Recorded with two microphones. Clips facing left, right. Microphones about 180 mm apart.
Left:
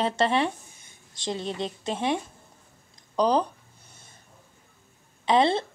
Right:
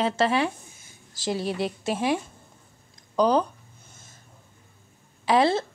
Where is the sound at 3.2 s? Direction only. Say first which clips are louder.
Right 2 dB; centre (ahead or behind).